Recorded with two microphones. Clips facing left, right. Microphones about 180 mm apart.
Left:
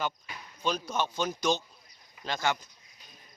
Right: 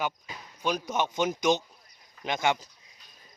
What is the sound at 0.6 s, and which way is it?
A man's voice, 15° right (ahead or behind).